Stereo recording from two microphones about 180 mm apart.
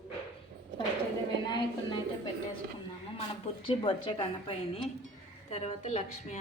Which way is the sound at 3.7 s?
30° left (ahead or behind).